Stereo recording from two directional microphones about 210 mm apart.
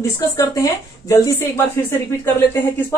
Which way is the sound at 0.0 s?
15° left (ahead or behind).